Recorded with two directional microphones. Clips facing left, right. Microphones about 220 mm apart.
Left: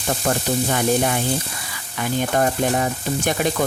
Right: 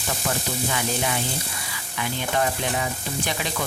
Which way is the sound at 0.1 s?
45° left (ahead or behind).